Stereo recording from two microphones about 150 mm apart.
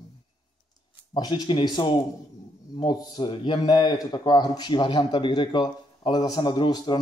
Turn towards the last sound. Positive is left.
turn(degrees=30)  # may be behind; listen again after turning